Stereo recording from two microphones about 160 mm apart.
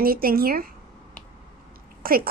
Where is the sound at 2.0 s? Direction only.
65° right (ahead or behind).